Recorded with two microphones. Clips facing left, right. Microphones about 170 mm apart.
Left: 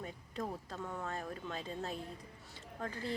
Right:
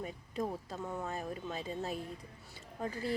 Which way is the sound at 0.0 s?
10° right (ahead or behind).